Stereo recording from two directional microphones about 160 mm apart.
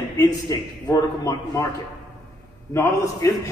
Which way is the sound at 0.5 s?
20° left (ahead or behind).